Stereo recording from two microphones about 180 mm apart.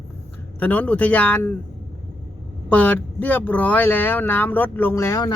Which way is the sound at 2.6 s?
5° left (ahead or behind).